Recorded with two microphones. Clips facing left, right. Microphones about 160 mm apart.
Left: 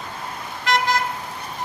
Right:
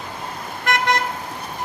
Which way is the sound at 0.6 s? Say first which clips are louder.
Even; 55° right (ahead or behind).